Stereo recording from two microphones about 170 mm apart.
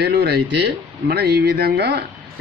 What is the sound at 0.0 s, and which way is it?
Speech, 85° right.